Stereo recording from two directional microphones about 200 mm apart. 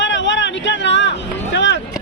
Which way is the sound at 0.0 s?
65° left (ahead or behind).